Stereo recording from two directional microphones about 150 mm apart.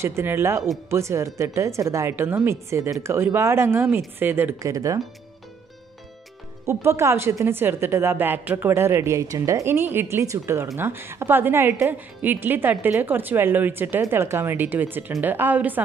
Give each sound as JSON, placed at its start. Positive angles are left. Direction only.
{"t": 0.0, "sound": "a woman's voice", "side_deg": -15}
{"t": 6.6, "sound": "a woman's voice", "side_deg": -15}